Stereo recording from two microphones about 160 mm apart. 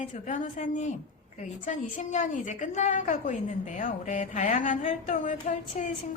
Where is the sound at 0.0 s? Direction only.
50° left (ahead or behind).